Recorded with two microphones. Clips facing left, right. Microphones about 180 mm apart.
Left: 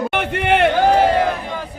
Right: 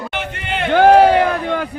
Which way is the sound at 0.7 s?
70° right (ahead or behind).